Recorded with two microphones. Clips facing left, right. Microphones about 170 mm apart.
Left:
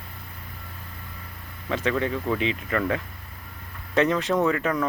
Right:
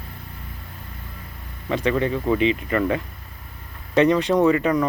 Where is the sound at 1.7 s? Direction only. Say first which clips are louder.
Right 4 dB; centre (ahead or behind).